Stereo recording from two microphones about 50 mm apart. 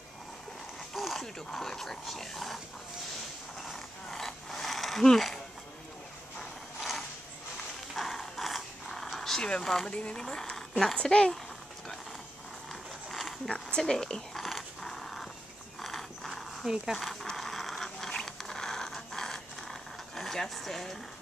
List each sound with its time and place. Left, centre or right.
0.9 s a sound: centre
1.2 s speech: centre
3.6 s a sound: centre
6.8 s mechanisms: centre
7.9 s a sound: centre
9.5 s speech: centre
9.8 s speech: left
10.2 s speech: centre
13.5 s speech: centre
14.4 s a sound: centre
16.6 s speech: centre
16.9 s zipper: centre